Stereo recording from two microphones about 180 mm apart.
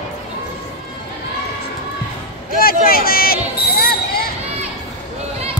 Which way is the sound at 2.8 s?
55° left (ahead or behind).